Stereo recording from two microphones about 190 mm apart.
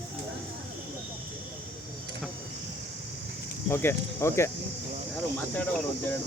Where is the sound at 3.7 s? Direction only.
10° left (ahead or behind).